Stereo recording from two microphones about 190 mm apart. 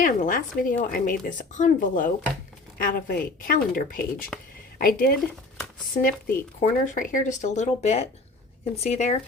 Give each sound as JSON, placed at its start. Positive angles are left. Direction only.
{"t": 0.0, "sound": "speech", "side_deg": 45}